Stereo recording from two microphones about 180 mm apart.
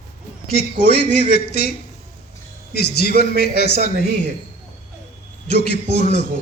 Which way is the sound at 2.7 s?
60° left (ahead or behind).